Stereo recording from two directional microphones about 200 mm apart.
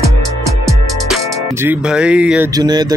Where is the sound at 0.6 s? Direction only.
Centre (ahead or behind).